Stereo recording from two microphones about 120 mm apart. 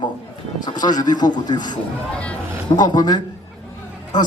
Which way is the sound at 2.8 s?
35° left (ahead or behind).